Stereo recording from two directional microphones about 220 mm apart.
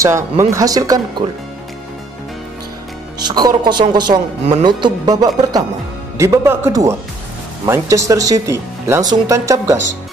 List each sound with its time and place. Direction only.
0.0 s speech: 15° right (ahead or behind)
3.3 s speech: 20° right (ahead or behind)